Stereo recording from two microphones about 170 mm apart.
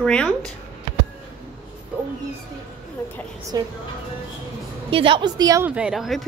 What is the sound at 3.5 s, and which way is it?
Speech, 20° right (ahead or behind).